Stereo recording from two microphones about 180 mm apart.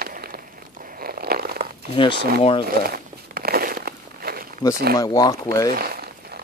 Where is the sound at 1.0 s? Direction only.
60° right (ahead or behind).